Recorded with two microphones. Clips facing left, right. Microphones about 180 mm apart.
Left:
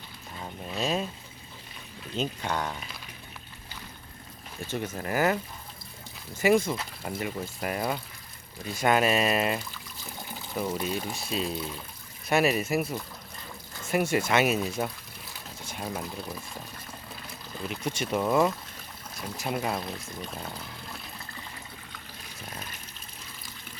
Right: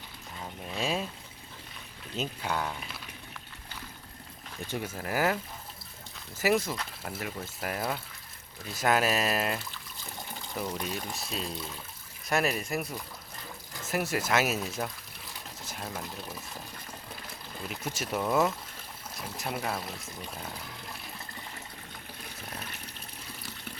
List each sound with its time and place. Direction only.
0.8 s a sound: 10° right (ahead or behind)
2.1 s speech: 5° right (ahead or behind)
4.6 s speech: 10° right (ahead or behind)
15.6 s a sound: centre (ahead or behind)
17.7 s speech: 5° right (ahead or behind)
22.7 s water: 65° right (ahead or behind)